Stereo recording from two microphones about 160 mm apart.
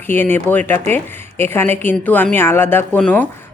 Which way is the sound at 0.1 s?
15° left (ahead or behind).